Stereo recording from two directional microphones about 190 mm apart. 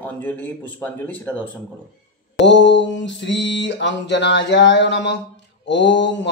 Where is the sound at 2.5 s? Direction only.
70° left (ahead or behind).